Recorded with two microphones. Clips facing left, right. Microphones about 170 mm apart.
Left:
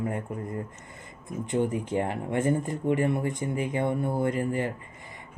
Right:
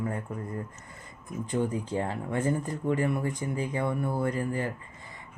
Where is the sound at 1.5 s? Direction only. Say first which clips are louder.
Left 2 dB; 20° left (ahead or behind).